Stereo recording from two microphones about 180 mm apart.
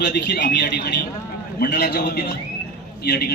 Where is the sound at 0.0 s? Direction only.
70° left (ahead or behind).